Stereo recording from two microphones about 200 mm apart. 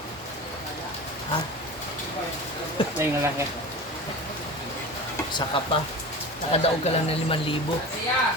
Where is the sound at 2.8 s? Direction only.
25° left (ahead or behind).